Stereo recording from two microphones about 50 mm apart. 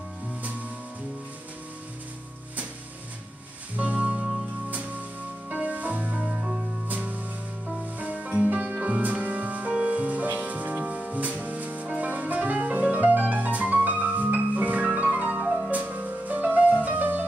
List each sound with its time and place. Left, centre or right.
3.7 s music: right
5.5 s music: right
6.2 s music: centre
6.9 s music: right